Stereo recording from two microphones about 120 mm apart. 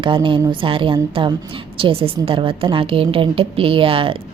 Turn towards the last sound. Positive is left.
turn(degrees=-50)  # may be behind; listen again after turning